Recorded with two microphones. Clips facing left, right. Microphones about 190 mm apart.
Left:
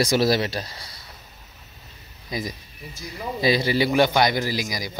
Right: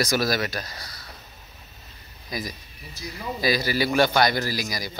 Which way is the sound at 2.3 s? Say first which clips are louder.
Left 2 dB; 25° left (ahead or behind).